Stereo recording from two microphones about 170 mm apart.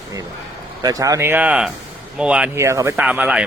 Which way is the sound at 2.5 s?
15° right (ahead or behind).